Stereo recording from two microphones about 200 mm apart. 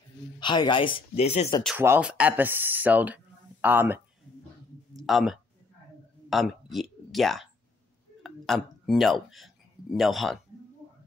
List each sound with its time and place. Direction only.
0.4 s speech: 25° left (ahead or behind)
1.8 s speech: 10° right (ahead or behind)